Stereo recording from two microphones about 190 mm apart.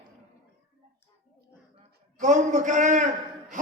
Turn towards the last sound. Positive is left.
turn(degrees=-40)  # may be behind; listen again after turning